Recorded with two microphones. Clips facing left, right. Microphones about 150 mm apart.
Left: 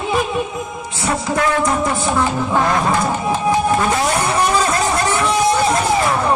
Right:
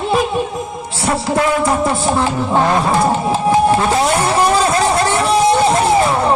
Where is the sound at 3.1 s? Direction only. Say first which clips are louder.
Right 3 dB; 30° right (ahead or behind).